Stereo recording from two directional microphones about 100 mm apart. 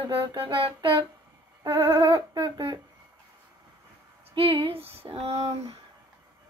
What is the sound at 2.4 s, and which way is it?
Speech, 45° right (ahead or behind).